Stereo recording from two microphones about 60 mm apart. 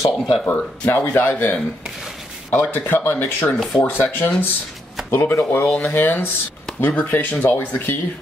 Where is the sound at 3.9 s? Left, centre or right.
Left.